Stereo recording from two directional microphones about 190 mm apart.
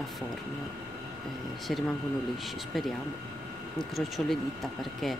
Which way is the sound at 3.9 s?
Centre (ahead or behind).